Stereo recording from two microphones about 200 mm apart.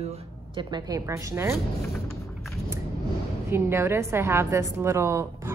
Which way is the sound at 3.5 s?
10° right (ahead or behind).